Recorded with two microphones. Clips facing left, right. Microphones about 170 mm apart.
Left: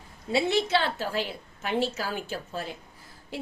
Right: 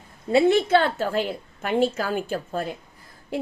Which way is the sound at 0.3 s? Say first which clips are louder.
Right 7 dB; 55° right (ahead or behind).